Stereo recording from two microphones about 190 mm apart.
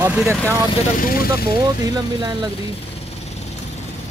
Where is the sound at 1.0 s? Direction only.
50° left (ahead or behind).